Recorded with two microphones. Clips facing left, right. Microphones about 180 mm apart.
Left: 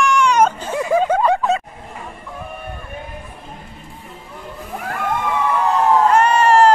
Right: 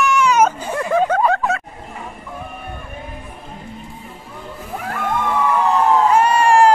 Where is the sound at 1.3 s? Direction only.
20° left (ahead or behind).